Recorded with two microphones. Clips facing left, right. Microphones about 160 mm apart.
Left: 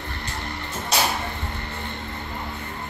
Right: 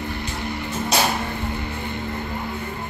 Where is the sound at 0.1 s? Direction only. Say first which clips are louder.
Right 5 dB; 5° right (ahead or behind).